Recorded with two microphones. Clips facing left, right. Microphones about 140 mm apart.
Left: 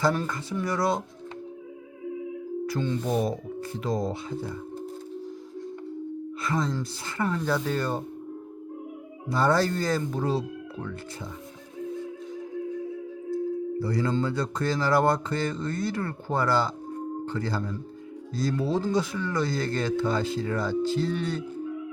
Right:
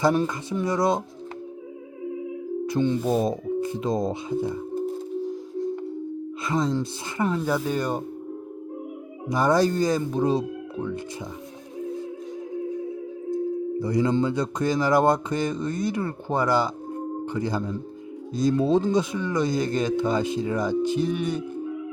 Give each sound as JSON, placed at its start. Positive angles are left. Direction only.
{"t": 0.0, "sound": "speech", "side_deg": -20}
{"t": 2.6, "sound": "speech", "side_deg": -20}
{"t": 6.4, "sound": "speech", "side_deg": -20}
{"t": 9.3, "sound": "speech", "side_deg": -15}
{"t": 13.3, "sound": "speech", "side_deg": -20}